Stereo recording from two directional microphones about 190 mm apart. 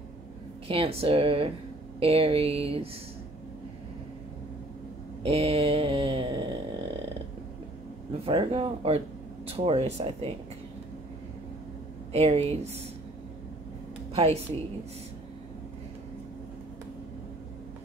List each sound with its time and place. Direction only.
0.7 s speech: 30° right (ahead or behind)
5.2 s a sound: 30° right (ahead or behind)
8.3 s speech: 25° right (ahead or behind)
12.1 s speech: 30° right (ahead or behind)
14.1 s a woman's voice: 35° right (ahead or behind)